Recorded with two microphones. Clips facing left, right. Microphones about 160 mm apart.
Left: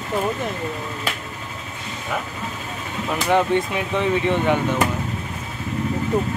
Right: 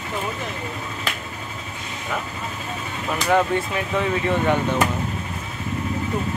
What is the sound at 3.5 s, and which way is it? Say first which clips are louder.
Speech: left 3 dB; 25° left (ahead or behind).